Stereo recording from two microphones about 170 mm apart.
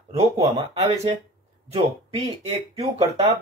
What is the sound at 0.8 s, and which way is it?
Speech, 35° right (ahead or behind).